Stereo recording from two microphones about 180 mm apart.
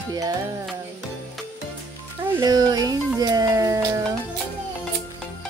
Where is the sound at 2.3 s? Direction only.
20° right (ahead or behind).